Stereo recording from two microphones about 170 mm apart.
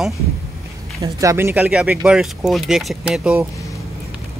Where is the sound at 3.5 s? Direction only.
20° left (ahead or behind).